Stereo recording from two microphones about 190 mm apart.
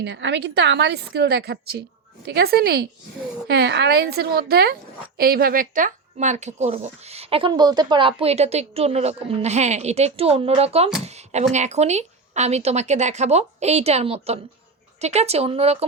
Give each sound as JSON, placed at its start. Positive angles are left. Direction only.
{"t": 0.0, "sound": "a woman's voice", "side_deg": -70}